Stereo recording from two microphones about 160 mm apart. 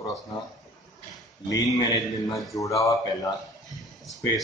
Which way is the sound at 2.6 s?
20° left (ahead or behind).